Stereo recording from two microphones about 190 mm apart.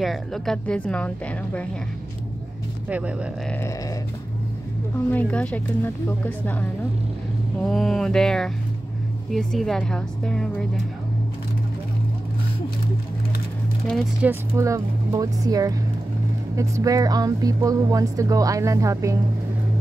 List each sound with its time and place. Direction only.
0.0 s a woman's voice: centre (ahead or behind)
2.9 s a woman's voice: 5° right (ahead or behind)
5.1 s a woman's voice: 5° left (ahead or behind)
14.2 s a woman's voice: 15° right (ahead or behind)